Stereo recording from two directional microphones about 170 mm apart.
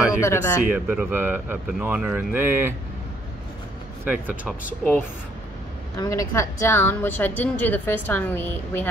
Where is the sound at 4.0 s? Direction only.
10° right (ahead or behind).